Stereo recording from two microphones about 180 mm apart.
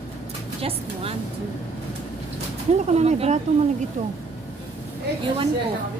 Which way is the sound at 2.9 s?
35° right (ahead or behind).